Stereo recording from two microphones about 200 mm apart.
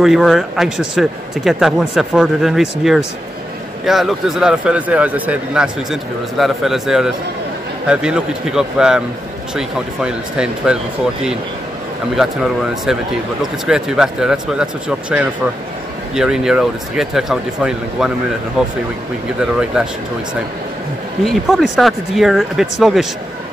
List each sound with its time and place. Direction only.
0.0 s speech: centre (ahead or behind)
12.2 s speech: 5° right (ahead or behind)
21.2 s speech: centre (ahead or behind)